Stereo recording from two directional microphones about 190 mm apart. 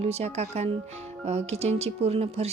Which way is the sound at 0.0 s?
35° right (ahead or behind).